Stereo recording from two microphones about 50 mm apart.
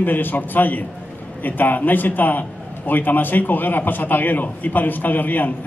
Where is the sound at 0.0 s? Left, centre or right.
Left.